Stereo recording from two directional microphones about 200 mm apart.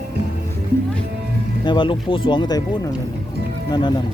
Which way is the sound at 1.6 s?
25° left (ahead or behind).